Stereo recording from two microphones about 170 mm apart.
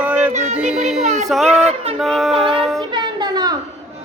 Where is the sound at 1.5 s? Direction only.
40° right (ahead or behind).